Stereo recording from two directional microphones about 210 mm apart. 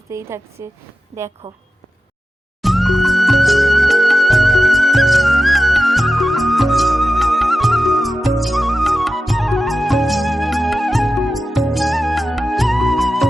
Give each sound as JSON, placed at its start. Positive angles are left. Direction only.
{"t": 0.1, "sound": "a woman's voice", "side_deg": -15}
{"t": 1.1, "sound": "a woman's voice", "side_deg": -30}
{"t": 2.6, "sound": "music", "side_deg": 0}